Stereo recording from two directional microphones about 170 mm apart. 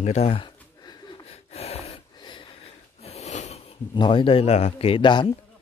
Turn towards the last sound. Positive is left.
turn(degrees=30)  # may be behind; listen again after turning